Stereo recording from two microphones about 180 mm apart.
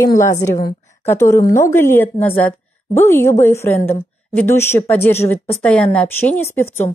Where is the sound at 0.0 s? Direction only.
15° left (ahead or behind).